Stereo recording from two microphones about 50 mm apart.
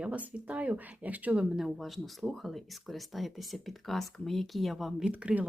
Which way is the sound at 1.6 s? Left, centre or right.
Centre.